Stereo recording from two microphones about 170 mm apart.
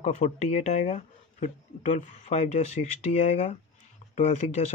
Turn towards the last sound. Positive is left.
turn(degrees=40)  # may be behind; listen again after turning